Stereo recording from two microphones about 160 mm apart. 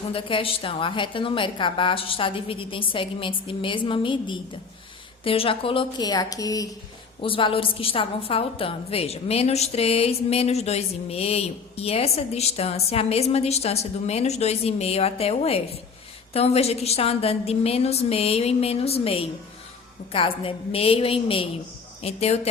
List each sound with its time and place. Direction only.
0.1 s a woman's voice: 35° left (ahead or behind)
7.2 s a woman's voice: 35° left (ahead or behind)